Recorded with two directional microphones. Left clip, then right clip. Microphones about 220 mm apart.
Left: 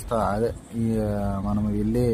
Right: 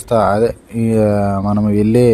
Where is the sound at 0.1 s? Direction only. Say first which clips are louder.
Right 11 dB; 35° right (ahead or behind).